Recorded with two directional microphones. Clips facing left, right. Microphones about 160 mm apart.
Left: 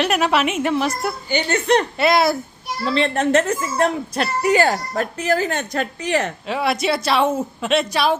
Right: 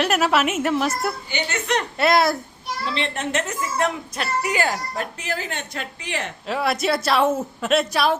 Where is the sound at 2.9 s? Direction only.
40° left (ahead or behind).